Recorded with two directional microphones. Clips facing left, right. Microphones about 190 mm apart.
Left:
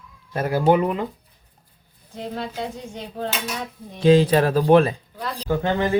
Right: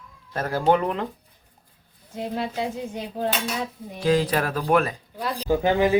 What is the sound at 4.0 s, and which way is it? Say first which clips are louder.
Speech: left 6 dB; 25° left (ahead or behind).